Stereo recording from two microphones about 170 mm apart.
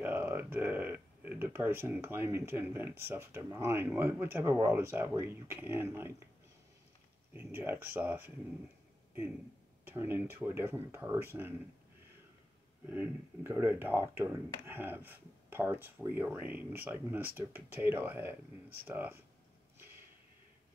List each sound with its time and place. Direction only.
0.0 s speech: 10° right (ahead or behind)
7.3 s speech: 15° right (ahead or behind)
9.8 s speech: 15° right (ahead or behind)
12.9 s speech: 15° right (ahead or behind)